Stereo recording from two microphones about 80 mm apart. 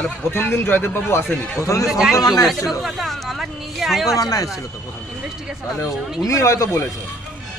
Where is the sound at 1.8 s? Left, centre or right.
Centre.